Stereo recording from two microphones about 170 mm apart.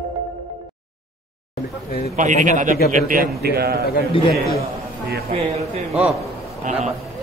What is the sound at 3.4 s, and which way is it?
Speech, 65° right (ahead or behind).